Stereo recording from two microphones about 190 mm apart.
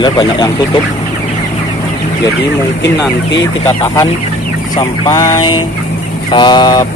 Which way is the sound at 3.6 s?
15° left (ahead or behind).